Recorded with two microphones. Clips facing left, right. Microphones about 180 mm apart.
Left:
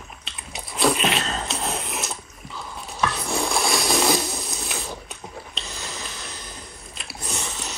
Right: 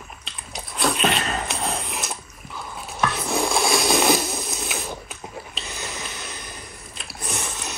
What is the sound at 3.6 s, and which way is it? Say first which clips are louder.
Ratchet: right 3 dB; centre (ahead or behind).